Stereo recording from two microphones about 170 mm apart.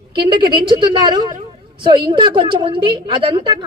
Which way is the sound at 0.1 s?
30° right (ahead or behind).